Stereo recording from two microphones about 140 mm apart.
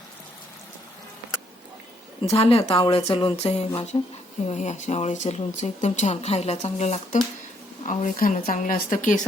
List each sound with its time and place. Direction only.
2.2 s speech: 45° left (ahead or behind)
3.9 s speech: 40° left (ahead or behind)
4.4 s speech: 55° left (ahead or behind)
7.9 s speech: 65° left (ahead or behind)